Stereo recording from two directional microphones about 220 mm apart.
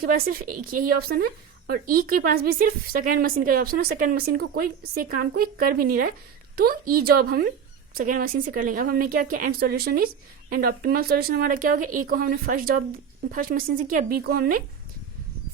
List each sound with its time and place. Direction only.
0.0 s a woman's voice: 40° right (ahead or behind)